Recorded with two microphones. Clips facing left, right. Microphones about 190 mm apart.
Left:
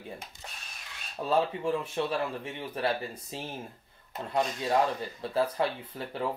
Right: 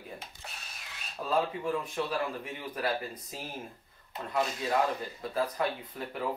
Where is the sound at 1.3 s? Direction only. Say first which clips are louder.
Left 2 dB; 30° left (ahead or behind).